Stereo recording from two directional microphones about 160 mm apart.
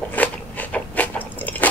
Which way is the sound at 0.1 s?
10° left (ahead or behind).